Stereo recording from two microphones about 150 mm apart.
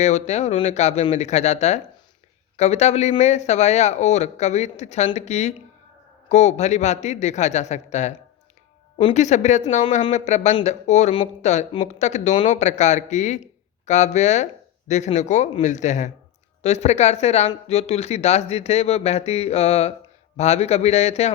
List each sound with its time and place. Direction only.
0.0 s speech: 50° left (ahead or behind)